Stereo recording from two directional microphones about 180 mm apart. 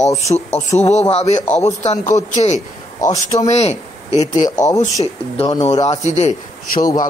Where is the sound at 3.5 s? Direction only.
40° left (ahead or behind).